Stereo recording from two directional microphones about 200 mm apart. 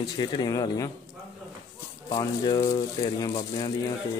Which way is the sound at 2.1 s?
20° left (ahead or behind).